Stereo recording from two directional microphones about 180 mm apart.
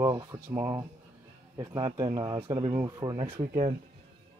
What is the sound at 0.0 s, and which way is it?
Speech, 20° right (ahead or behind).